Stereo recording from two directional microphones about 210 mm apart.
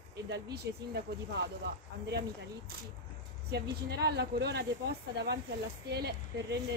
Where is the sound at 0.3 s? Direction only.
50° right (ahead or behind).